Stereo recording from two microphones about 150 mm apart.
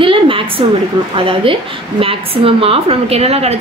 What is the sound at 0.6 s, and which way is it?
A woman's voice, 35° right (ahead or behind).